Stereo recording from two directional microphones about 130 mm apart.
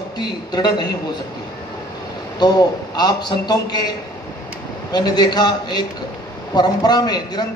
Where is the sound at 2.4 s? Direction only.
30° left (ahead or behind).